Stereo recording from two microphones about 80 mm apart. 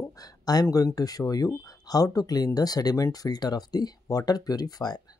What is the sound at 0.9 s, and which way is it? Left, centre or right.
Speech, left.